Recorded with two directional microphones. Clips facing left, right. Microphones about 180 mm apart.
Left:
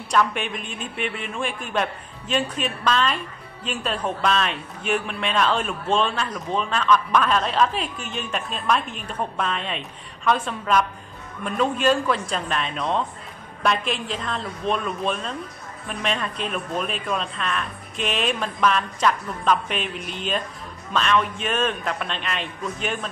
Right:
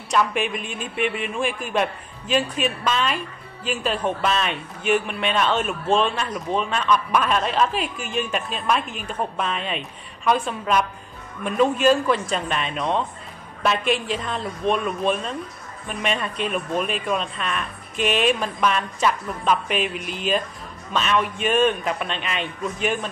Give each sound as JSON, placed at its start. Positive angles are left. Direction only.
{"t": 0.1, "sound": "a man's voice", "side_deg": -5}